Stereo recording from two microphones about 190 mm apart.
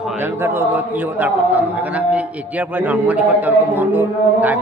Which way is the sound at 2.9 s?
5° right (ahead or behind).